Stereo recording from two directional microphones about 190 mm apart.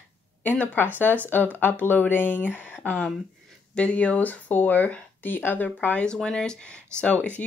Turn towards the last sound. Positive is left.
turn(degrees=10)  # may be behind; listen again after turning